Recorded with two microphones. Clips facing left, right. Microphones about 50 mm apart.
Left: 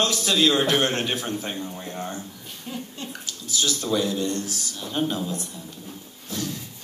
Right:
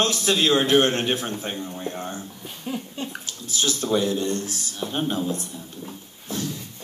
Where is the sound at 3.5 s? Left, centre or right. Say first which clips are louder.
Right 1 dB; right.